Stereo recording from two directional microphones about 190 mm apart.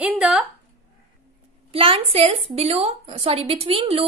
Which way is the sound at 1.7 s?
30° right (ahead or behind).